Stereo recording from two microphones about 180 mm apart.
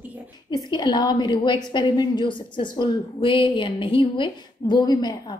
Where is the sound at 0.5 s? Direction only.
25° left (ahead or behind).